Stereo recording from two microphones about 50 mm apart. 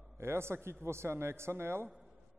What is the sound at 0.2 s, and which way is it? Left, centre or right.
Speech, right.